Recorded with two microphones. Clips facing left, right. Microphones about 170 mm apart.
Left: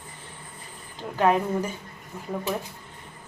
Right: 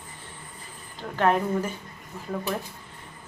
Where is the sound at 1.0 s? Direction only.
10° left (ahead or behind).